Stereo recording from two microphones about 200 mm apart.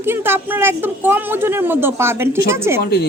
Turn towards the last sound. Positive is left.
turn(degrees=55)  # may be behind; listen again after turning